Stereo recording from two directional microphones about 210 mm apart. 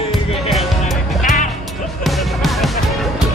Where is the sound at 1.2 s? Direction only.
35° left (ahead or behind).